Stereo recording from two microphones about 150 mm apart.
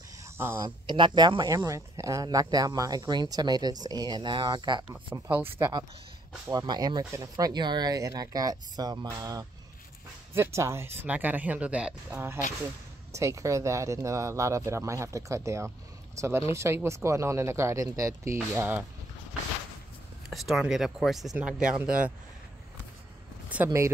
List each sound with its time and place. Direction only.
0.2 s a sound: 15° right (ahead or behind)
0.6 s speech: 30° right (ahead or behind)
5.1 s speech: 15° right (ahead or behind)
5.6 s speech: 25° right (ahead or behind)
20.2 s speech: centre (ahead or behind)
23.5 s speech: 15° right (ahead or behind)